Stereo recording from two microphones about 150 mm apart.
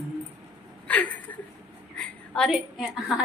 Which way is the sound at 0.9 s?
10° left (ahead or behind).